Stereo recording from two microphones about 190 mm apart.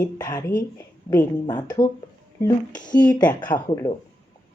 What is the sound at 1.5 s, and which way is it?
Speech, 20° left (ahead or behind).